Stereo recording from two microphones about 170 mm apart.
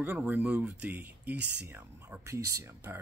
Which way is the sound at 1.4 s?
90° right.